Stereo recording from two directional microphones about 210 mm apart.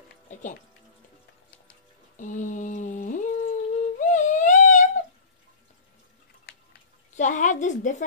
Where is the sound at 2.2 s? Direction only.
35° left (ahead or behind).